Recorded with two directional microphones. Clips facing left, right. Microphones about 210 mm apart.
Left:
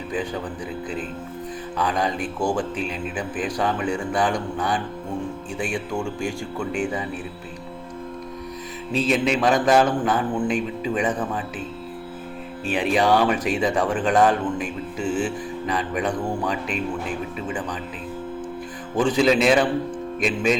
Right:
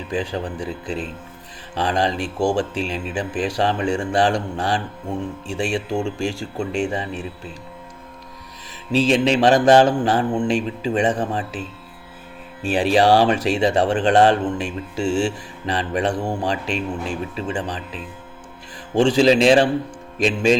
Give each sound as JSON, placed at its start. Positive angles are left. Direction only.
{"t": 0.1, "sound": "mantra", "side_deg": -25}
{"t": 3.9, "sound": "speech", "side_deg": -75}
{"t": 5.5, "sound": "mantra", "side_deg": -30}
{"t": 9.0, "sound": "mantra", "side_deg": -30}
{"t": 12.6, "sound": "speech", "side_deg": -30}
{"t": 13.7, "sound": "mantra", "side_deg": -25}
{"t": 19.1, "sound": "speech", "side_deg": -30}
{"t": 20.1, "sound": "mantra", "side_deg": -30}